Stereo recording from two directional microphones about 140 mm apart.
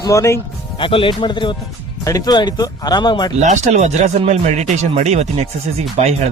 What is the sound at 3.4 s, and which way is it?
Speech, 55° right (ahead or behind).